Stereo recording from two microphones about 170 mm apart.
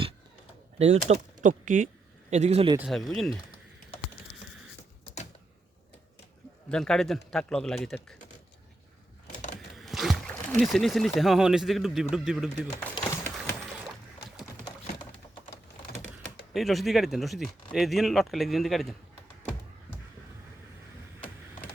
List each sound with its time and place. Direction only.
0.8 s speech: 40° right (ahead or behind)
2.7 s speech: centre (ahead or behind)
6.7 s speech: 5° left (ahead or behind)
9.3 s a sound: 45° left (ahead or behind)
9.6 s rowboat: centre (ahead or behind)
11.2 s speech: centre (ahead or behind)
12.8 s a sound: 15° left (ahead or behind)
16.5 s speech: centre (ahead or behind)